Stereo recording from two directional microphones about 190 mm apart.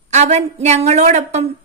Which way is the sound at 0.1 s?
35° right (ahead or behind).